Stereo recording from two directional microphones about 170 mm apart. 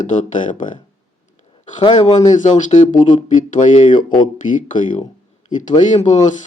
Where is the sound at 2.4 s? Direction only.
50° left (ahead or behind).